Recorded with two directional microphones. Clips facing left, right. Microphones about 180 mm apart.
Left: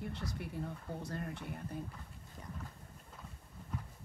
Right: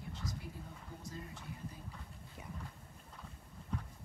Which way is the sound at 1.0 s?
65° left (ahead or behind).